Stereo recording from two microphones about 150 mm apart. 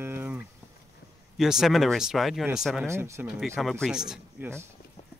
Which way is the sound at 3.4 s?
5° left (ahead or behind).